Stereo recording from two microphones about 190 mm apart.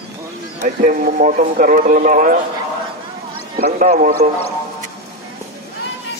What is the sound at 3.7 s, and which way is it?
Speech, 40° right (ahead or behind).